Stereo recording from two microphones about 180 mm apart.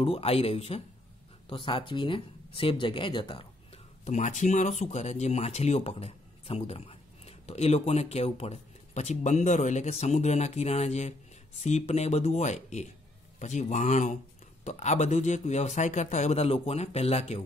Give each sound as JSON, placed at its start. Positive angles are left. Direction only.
{"t": 0.0, "sound": "speech", "side_deg": 35}